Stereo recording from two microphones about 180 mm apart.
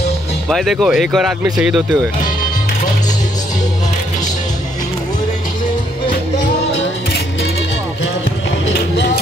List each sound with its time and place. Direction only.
0.5 s speech: centre (ahead or behind)
8.6 s music: 80° left